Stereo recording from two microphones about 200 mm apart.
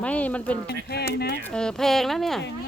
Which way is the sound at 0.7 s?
55° left (ahead or behind).